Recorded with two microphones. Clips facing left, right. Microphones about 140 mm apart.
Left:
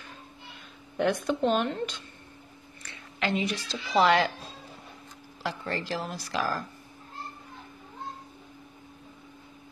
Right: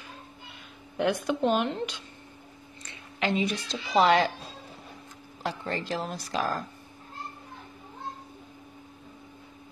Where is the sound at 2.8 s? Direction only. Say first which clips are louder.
Right 1 dB; 20° right (ahead or behind).